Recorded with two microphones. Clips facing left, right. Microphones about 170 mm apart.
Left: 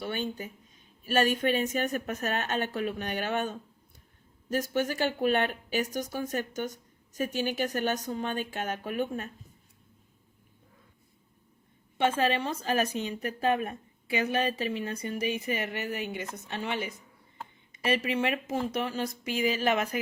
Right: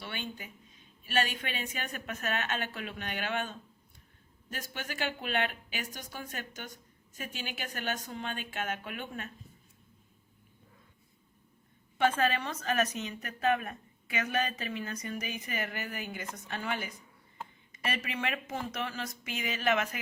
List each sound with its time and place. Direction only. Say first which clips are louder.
0.0 s a woman's voice: left 8 dB; 45° left (ahead or behind)
4.5 s a woman's voice: left 11 dB; 45° left (ahead or behind)
11.9 s speech: left 2 dB; 30° left (ahead or behind)